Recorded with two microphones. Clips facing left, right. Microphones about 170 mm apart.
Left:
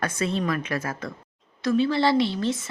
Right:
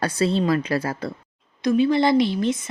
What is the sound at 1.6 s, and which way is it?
Speech, 15° right (ahead or behind).